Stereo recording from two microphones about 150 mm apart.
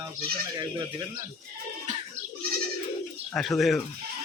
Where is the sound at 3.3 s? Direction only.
Centre (ahead or behind).